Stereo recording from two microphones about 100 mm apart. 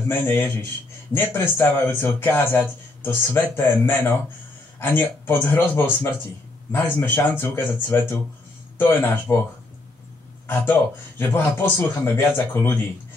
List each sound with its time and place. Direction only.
0.1 s speech: 20° left (ahead or behind)
10.4 s speech: 25° left (ahead or behind)